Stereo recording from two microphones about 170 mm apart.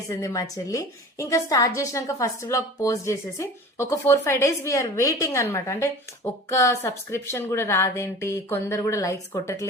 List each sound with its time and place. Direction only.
0.1 s a woman's voice: 20° left (ahead or behind)